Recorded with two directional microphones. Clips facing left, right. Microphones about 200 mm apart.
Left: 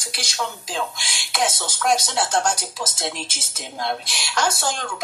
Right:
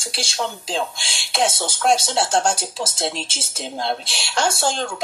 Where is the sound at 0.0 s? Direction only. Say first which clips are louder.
Right 3 dB; 30° right (ahead or behind).